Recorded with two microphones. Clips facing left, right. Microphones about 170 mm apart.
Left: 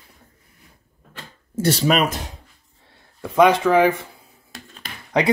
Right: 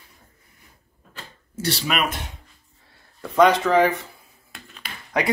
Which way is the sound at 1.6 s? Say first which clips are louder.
Left 6 dB; 45° left (ahead or behind).